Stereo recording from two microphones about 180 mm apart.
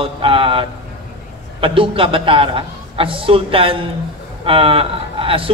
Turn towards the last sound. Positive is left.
turn(degrees=-30)  # may be behind; listen again after turning